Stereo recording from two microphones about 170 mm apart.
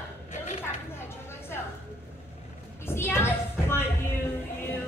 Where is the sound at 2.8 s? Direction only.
15° left (ahead or behind).